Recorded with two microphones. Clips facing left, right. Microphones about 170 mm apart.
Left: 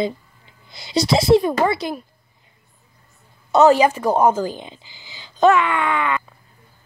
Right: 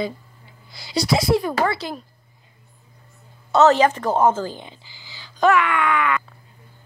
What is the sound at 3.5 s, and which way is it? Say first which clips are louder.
A woman's voice: left 2 dB; 15° left (ahead or behind).